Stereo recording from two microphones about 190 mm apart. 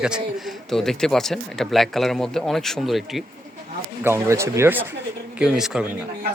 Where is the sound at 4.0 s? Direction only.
10° right (ahead or behind).